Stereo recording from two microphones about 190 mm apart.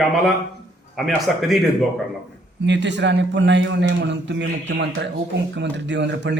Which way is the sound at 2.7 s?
70° right (ahead or behind).